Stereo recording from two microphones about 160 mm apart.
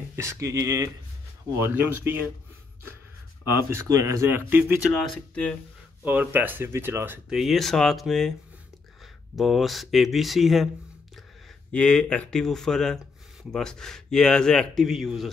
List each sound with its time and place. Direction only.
0.1 s speech: 15° right (ahead or behind)
3.5 s speech: 15° right (ahead or behind)
5.1 s speech: 5° left (ahead or behind)
6.0 s speech: 10° right (ahead or behind)
11.7 s speech: 5° left (ahead or behind)